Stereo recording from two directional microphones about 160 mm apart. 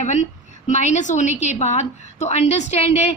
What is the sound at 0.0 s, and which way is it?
A woman's voice, 50° left (ahead or behind).